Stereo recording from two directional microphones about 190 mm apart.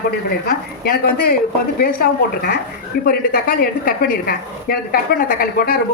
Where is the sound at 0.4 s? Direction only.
50° left (ahead or behind).